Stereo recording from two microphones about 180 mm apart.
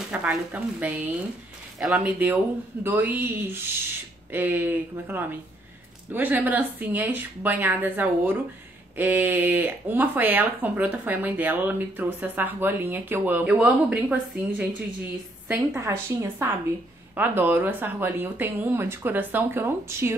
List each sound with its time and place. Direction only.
0.1 s speech: 5° right (ahead or behind)